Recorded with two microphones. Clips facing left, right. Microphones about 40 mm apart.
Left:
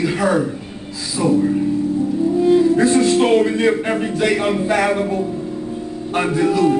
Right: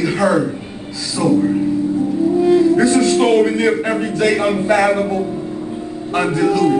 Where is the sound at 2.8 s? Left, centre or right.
Left.